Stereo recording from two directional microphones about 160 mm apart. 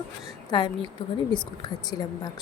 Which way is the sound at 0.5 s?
30° left (ahead or behind).